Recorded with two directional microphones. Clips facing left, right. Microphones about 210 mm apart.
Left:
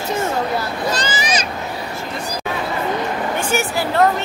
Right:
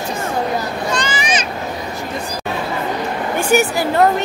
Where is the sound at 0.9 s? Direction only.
35° left (ahead or behind).